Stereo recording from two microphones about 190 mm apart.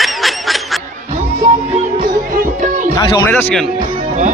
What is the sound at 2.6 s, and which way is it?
Music, 40° right (ahead or behind).